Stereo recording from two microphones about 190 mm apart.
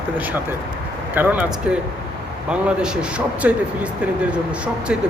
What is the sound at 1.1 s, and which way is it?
Speech, 10° right (ahead or behind).